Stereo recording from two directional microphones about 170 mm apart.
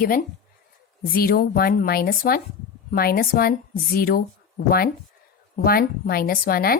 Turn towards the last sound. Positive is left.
turn(degrees=60)  # may be behind; listen again after turning